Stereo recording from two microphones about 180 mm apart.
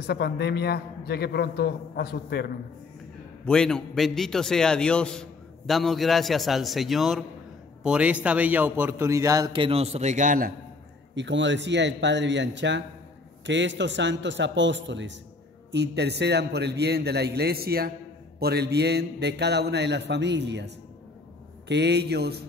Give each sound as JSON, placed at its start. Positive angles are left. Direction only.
{"t": 0.0, "sound": "a man's voice", "side_deg": 65}
{"t": 3.4, "sound": "a man's voice", "side_deg": 5}
{"t": 11.1, "sound": "a man's voice", "side_deg": -85}
{"t": 15.7, "sound": "a man's voice", "side_deg": -70}